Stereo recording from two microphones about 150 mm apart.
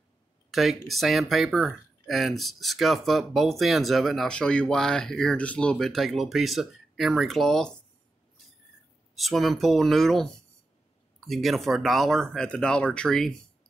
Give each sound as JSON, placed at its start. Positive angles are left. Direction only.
{"t": 0.5, "sound": "speech", "side_deg": 0}
{"t": 9.1, "sound": "speech", "side_deg": 0}